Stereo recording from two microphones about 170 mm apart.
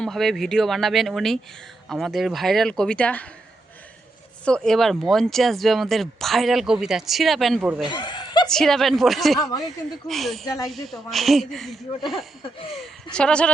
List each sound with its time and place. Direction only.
0.0 s speech: centre (ahead or behind)
4.4 s speech: 5° left (ahead or behind)
7.8 s snicker: 25° left (ahead or behind)
8.4 s speech: 5° left (ahead or behind)
9.4 s speech: 25° left (ahead or behind)
9.6 s speech: centre (ahead or behind)
13.1 s speech: 5° left (ahead or behind)